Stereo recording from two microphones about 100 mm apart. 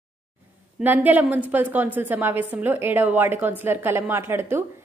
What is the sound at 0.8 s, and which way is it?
A woman's voice, 15° right (ahead or behind).